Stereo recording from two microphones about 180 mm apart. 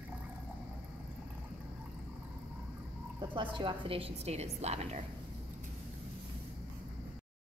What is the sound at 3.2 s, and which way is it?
A woman's voice, 30° right (ahead or behind).